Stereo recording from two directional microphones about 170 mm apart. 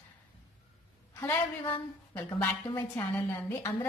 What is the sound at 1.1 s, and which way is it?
A woman's voice, 15° left (ahead or behind).